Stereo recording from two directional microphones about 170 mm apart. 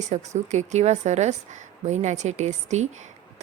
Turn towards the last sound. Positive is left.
turn(degrees=-45)  # may be behind; listen again after turning